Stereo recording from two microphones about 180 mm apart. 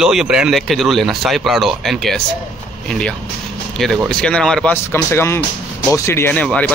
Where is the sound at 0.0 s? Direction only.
5° right (ahead or behind).